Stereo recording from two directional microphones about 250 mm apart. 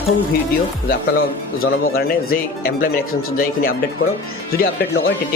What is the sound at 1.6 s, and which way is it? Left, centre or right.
Speech, left.